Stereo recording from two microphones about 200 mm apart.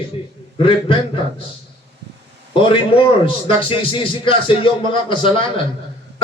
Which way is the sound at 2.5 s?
25° left (ahead or behind).